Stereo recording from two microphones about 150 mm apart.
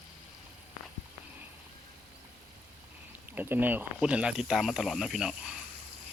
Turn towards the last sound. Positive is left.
turn(degrees=-5)  # may be behind; listen again after turning